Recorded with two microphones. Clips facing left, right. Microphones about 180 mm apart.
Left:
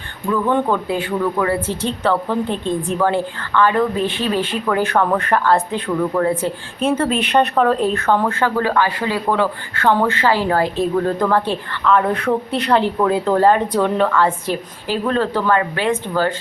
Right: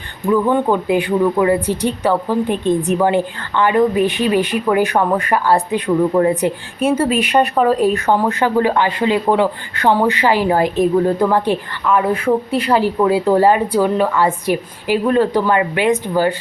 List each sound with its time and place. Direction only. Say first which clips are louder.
0.3 s speech: right 3 dB; 15° right (ahead or behind)